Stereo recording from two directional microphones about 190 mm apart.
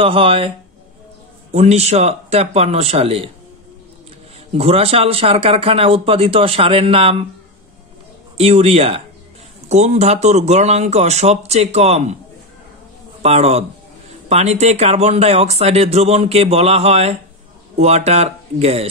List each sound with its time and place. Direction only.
0.0 s speech: 30° right (ahead or behind)
1.5 s speech: 35° right (ahead or behind)
4.6 s speech: 30° right (ahead or behind)
8.4 s speech: 30° right (ahead or behind)
13.2 s speech: 35° right (ahead or behind)